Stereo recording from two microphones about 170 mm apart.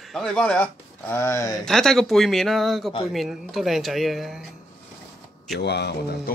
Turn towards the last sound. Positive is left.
turn(degrees=75)  # may be behind; listen again after turning